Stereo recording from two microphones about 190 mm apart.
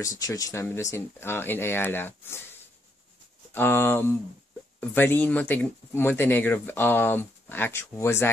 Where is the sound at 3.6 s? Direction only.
10° left (ahead or behind).